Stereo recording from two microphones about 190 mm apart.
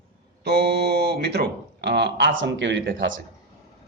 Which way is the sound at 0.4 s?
60° right (ahead or behind).